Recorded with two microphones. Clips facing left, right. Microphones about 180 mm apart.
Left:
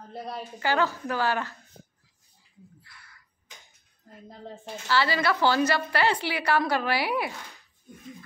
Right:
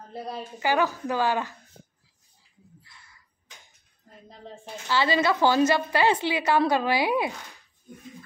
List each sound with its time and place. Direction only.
0.6 s a woman's voice: 15° right (ahead or behind)
2.9 s a sound: 25° right (ahead or behind)
4.8 s a woman's voice: 20° right (ahead or behind)